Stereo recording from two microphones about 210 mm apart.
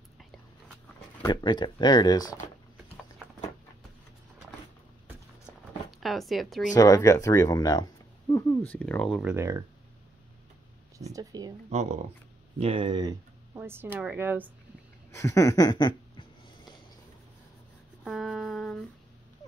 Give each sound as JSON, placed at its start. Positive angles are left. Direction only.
{"t": 1.2, "sound": "speech", "side_deg": 20}
{"t": 5.9, "sound": "a woman's voice", "side_deg": 0}
{"t": 6.7, "sound": "speech", "side_deg": 15}
{"t": 9.3, "sound": "speech", "side_deg": -15}
{"t": 11.1, "sound": "speech", "side_deg": -20}
{"t": 11.7, "sound": "speech", "side_deg": -30}
{"t": 13.6, "sound": "speech", "side_deg": -10}
{"t": 15.0, "sound": "a sound", "side_deg": 15}
{"t": 18.0, "sound": "a sound", "side_deg": 0}